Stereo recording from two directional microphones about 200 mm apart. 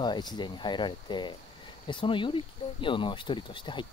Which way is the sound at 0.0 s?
20° left (ahead or behind).